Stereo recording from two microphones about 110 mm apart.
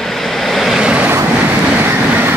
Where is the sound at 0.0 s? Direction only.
Centre (ahead or behind); by 2.3 s 20° right (ahead or behind).